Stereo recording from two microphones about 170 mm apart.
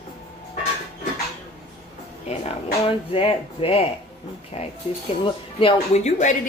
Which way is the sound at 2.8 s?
35° left (ahead or behind).